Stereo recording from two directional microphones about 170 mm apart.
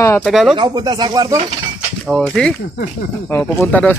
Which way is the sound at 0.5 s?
25° right (ahead or behind).